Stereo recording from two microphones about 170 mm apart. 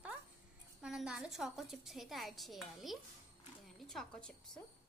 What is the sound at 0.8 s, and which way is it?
A woman's voice, 5° right (ahead or behind).